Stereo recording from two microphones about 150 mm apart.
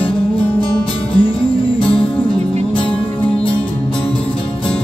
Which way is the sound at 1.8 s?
35° left (ahead or behind).